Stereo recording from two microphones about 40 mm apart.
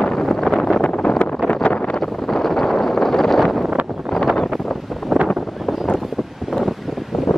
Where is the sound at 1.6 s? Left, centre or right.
Left.